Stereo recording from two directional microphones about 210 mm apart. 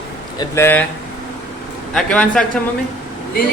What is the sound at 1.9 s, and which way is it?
Speech, 5° left (ahead or behind).